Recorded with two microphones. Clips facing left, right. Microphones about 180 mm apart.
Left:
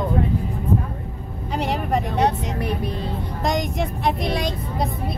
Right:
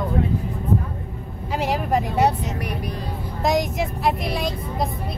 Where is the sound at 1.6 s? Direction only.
Centre (ahead or behind).